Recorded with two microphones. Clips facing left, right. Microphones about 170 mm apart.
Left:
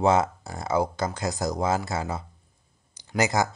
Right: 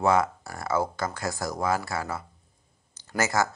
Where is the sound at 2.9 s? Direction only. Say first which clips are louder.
Left 2 dB; 15° left (ahead or behind).